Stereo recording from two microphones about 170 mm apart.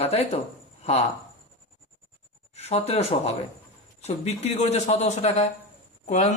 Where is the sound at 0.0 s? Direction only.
35° left (ahead or behind).